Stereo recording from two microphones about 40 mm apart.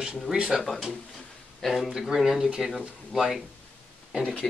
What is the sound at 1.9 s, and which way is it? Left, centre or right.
Speech, centre.